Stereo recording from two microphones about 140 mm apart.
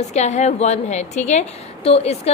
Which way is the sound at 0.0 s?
55° left (ahead or behind).